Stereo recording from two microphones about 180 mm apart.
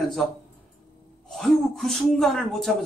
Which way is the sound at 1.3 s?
Centre (ahead or behind).